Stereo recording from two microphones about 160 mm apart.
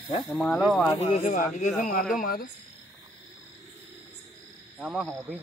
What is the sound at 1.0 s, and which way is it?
Speech, 40° left (ahead or behind).